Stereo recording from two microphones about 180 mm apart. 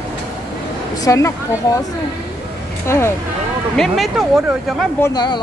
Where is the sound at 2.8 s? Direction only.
15° left (ahead or behind).